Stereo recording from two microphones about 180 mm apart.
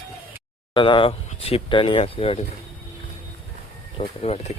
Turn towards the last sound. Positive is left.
turn(degrees=35)  # may be behind; listen again after turning